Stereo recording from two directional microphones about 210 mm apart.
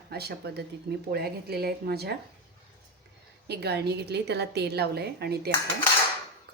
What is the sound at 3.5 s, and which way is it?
A woman's voice, 50° right (ahead or behind).